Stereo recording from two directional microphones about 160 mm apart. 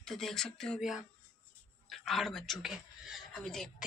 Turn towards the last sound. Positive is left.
turn(degrees=0)  # may be behind; listen again after turning